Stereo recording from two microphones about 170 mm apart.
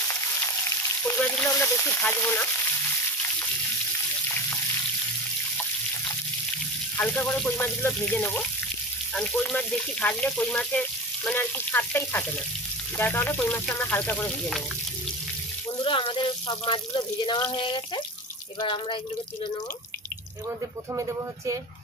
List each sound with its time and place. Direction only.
0.1 s frying: 15° left (ahead or behind)
7.0 s speech: 10° left (ahead or behind)
15.8 s speech: 30° left (ahead or behind)
20.4 s speech: 20° right (ahead or behind)